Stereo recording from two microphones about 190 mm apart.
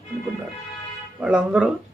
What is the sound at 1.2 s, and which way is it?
Speech, 5° right (ahead or behind).